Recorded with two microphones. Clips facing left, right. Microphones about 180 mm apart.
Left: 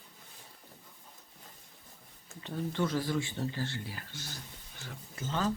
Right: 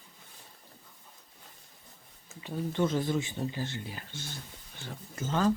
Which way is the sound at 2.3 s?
10° right (ahead or behind).